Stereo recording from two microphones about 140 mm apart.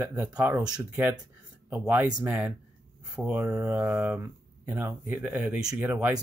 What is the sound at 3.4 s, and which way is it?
Mantra, 20° right (ahead or behind).